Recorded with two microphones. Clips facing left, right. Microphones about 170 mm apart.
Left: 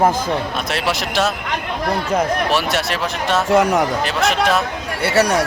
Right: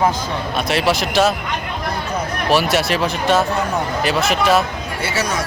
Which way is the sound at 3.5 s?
90° left.